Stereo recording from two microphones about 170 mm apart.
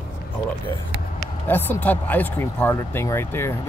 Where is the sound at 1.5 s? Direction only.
10° left (ahead or behind).